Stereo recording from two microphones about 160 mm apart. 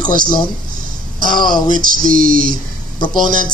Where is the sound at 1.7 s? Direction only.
60° right (ahead or behind).